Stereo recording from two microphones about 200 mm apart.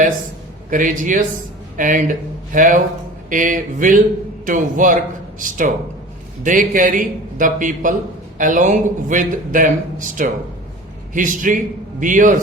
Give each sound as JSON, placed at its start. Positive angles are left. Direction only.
{"t": 0.7, "sound": "a man's voice", "side_deg": -40}